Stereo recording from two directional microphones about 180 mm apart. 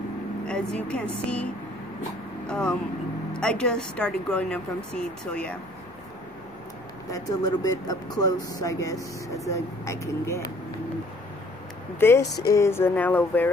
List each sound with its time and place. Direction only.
0.5 s speech: 5° left (ahead or behind)
7.1 s speech: 20° left (ahead or behind)
12.0 s music: 15° left (ahead or behind)